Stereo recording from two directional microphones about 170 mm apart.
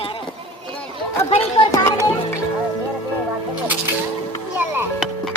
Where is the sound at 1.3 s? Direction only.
35° left (ahead or behind).